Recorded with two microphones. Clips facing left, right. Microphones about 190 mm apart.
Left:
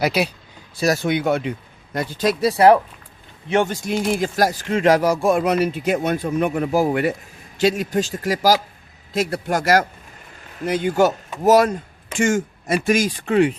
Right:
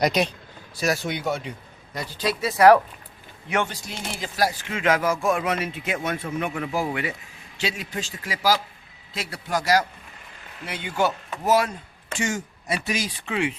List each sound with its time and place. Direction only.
0.0 s speech: 5° left (ahead or behind)
1.0 s speech: 60° left (ahead or behind); by 2.7 s 30° left (ahead or behind)
3.7 s speech: 50° left (ahead or behind)